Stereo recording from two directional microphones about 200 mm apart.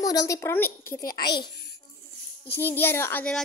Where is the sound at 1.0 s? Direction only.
45° left (ahead or behind).